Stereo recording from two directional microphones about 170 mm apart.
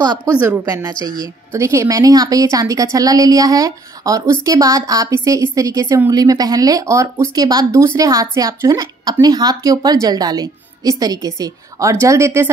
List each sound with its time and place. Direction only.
0.0 s a woman's voice: 25° right (ahead or behind)